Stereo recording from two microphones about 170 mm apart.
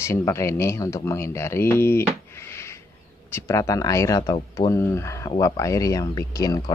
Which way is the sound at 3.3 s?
15° left (ahead or behind).